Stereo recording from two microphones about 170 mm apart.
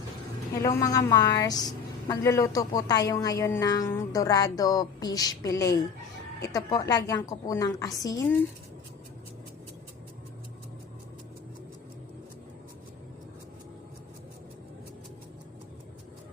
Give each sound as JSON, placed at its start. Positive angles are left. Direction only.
{"t": 0.5, "sound": "a woman's voice", "side_deg": 20}